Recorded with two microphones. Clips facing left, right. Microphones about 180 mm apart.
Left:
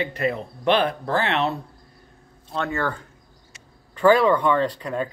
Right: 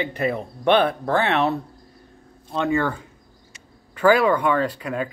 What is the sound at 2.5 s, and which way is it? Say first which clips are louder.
Speech: right 4 dB; 15° right (ahead or behind).